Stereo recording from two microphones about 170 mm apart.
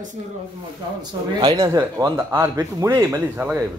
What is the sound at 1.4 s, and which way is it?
Speech, 25° right (ahead or behind).